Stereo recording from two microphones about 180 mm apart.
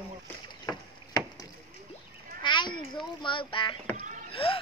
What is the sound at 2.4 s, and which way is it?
A child's voice, 25° left (ahead or behind).